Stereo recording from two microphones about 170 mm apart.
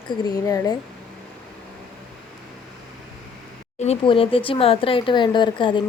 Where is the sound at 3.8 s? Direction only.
35° left (ahead or behind).